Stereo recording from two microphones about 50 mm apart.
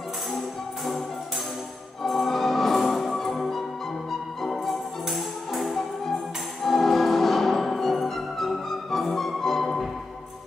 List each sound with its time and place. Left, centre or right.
2.0 s music: centre